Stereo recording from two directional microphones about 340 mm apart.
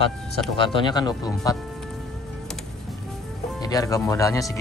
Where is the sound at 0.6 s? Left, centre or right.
Centre.